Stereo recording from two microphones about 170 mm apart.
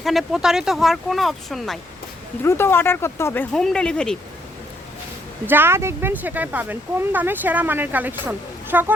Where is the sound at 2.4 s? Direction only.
15° left (ahead or behind).